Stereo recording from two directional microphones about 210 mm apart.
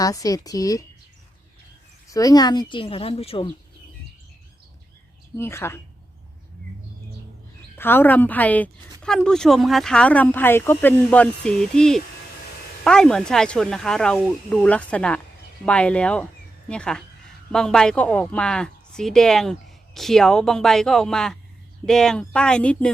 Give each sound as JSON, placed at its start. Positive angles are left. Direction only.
{"t": 0.0, "sound": "speech", "side_deg": 15}
{"t": 2.1, "sound": "a woman's voice", "side_deg": 15}
{"t": 5.4, "sound": "speech", "side_deg": 10}
{"t": 7.8, "sound": "speech", "side_deg": 10}